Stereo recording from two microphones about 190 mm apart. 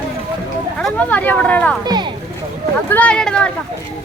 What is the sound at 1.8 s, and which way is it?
Speech, 20° right (ahead or behind).